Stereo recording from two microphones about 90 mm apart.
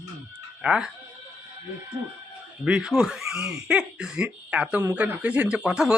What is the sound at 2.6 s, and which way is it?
Speech, 10° right (ahead or behind).